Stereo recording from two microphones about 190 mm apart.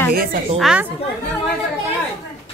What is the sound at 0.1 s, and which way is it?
Speech, 50° right (ahead or behind).